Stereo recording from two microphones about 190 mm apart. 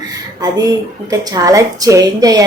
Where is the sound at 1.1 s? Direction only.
20° right (ahead or behind).